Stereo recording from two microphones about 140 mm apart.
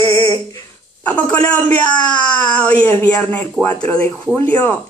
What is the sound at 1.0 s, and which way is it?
Speech, 10° left (ahead or behind).